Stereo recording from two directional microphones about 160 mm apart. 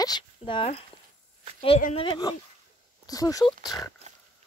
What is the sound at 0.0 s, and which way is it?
Speech, 30° left (ahead or behind).